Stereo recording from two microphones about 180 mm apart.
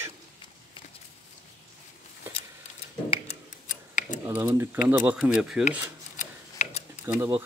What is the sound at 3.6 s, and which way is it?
Tick-tock, 45° left (ahead or behind).